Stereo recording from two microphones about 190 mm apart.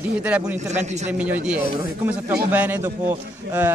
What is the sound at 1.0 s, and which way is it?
A man's voice, 10° right (ahead or behind).